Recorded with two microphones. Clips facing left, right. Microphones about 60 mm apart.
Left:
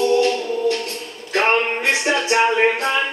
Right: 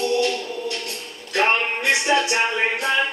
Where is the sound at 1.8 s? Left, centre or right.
Left.